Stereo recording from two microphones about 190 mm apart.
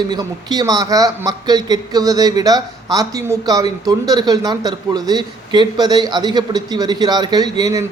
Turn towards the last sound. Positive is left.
turn(degrees=-20)  # may be behind; listen again after turning